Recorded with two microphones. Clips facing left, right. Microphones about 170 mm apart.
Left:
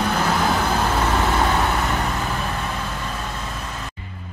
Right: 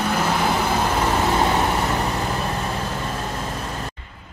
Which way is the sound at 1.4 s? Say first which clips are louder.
Right 1 dB; 20° right (ahead or behind).